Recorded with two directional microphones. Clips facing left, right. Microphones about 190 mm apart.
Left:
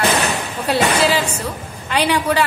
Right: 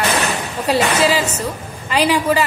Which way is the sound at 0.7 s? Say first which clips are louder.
Right 1 dB; 5° right (ahead or behind).